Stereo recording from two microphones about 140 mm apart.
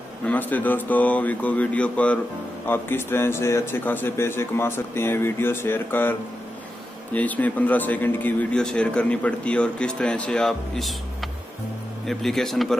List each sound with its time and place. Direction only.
0.3 s a man's voice: 10° left (ahead or behind)
7.2 s a man's voice: 10° left (ahead or behind)